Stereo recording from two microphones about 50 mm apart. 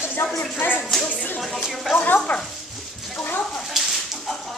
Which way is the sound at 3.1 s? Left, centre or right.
Left.